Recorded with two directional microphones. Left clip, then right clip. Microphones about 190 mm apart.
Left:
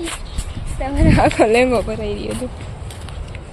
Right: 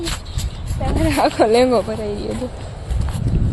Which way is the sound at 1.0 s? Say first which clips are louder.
Left 2 dB; 20° left (ahead or behind).